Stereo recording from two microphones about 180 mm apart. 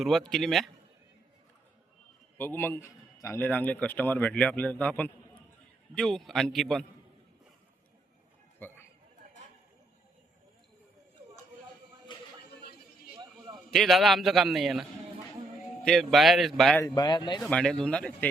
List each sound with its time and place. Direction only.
0.0 s a man's voice: centre (ahead or behind)
2.4 s a man's voice: 10° left (ahead or behind)
8.5 s a sound: 10° left (ahead or behind)
12.1 s a sound: 25° left (ahead or behind)
13.7 s a man's voice: centre (ahead or behind)
16.8 s speech: 20° left (ahead or behind)
17.4 s a man's voice: 5° left (ahead or behind)